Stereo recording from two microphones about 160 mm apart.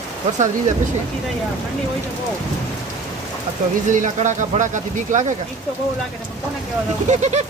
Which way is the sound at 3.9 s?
50° right (ahead or behind).